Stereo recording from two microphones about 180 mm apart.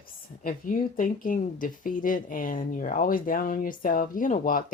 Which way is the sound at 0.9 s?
50° left (ahead or behind).